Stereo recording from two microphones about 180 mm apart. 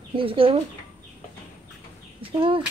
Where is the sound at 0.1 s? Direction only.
30° right (ahead or behind).